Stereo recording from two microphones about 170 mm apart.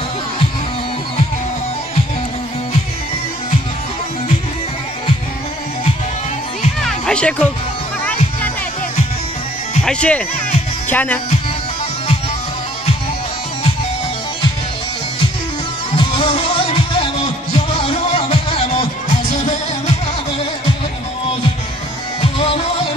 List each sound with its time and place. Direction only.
6.8 s music: 5° left (ahead or behind)
9.8 s speech: 5° left (ahead or behind)
16.0 s music: 30° left (ahead or behind)